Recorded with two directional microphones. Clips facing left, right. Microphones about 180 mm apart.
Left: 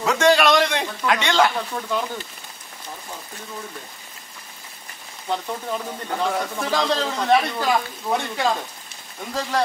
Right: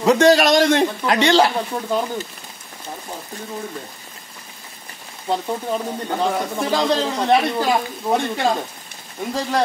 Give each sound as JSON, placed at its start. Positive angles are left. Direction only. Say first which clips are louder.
{"t": 0.0, "sound": "a man's voice", "louder": "right 4 dB", "side_deg": -35}
{"t": 5.3, "sound": "speech", "louder": "right 4 dB", "side_deg": -30}
{"t": 8.1, "sound": "a man's voice", "louder": "right 3 dB", "side_deg": -35}